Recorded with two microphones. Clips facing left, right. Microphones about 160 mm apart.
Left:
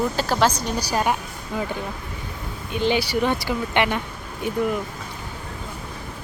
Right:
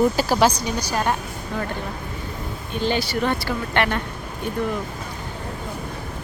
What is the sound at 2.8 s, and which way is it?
Speech, 15° left (ahead or behind).